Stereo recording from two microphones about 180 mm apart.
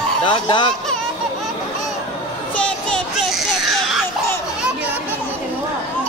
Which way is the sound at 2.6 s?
Centre (ahead or behind).